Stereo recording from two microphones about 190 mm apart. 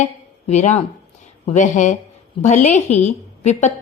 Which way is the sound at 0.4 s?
35° left (ahead or behind).